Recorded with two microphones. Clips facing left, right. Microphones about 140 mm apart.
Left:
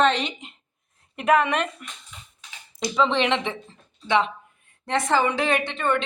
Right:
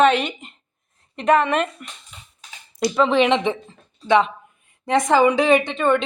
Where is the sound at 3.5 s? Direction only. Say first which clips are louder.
Right 8 dB; 20° right (ahead or behind).